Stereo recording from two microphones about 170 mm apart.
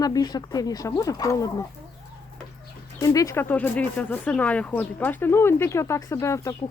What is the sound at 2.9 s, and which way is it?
Speech, 20° left (ahead or behind).